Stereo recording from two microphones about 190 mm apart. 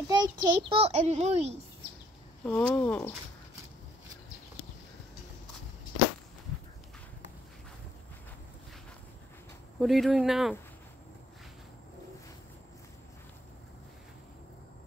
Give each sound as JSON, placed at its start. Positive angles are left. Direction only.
{"t": 0.1, "sound": "a child's voice", "side_deg": -20}
{"t": 2.4, "sound": "speech", "side_deg": 5}
{"t": 9.8, "sound": "speech", "side_deg": 0}